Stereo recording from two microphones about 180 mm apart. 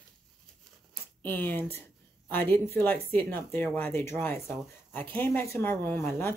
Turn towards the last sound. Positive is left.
turn(degrees=10)  # may be behind; listen again after turning